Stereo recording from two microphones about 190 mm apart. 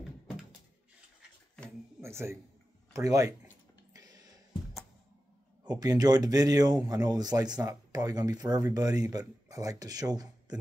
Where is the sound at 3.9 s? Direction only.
20° right (ahead or behind).